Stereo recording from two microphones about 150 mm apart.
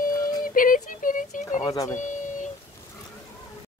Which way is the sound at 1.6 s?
25° left (ahead or behind).